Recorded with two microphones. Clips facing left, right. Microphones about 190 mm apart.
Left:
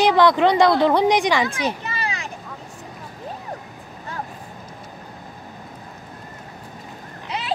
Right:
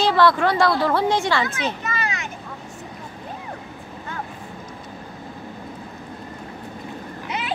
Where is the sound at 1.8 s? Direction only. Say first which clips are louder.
Right 1 dB; 30° left (ahead or behind).